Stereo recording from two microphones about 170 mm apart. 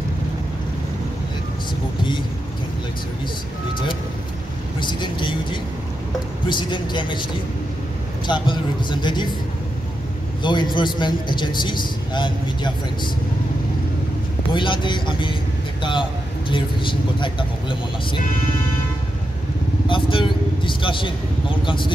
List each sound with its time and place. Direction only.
4.7 s a man's voice: 30° left (ahead or behind)
8.3 s a man's voice: 25° left (ahead or behind)
10.4 s a man's voice: 25° left (ahead or behind)
14.5 s a man's voice: 30° left (ahead or behind)
19.9 s a man's voice: 30° left (ahead or behind)